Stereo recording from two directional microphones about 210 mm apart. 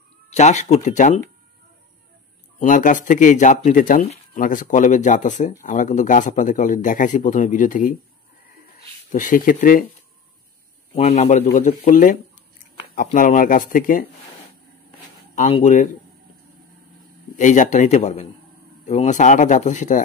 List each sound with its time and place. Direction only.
0.3 s speech: 30° left (ahead or behind)
2.6 s speech: 40° left (ahead or behind)
11.0 s speech: 35° left (ahead or behind)
15.3 s speech: 30° left (ahead or behind)
17.4 s speech: 35° left (ahead or behind)